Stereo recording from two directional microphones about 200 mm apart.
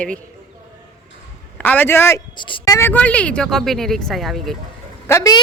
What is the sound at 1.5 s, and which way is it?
Speech, 10° left (ahead or behind).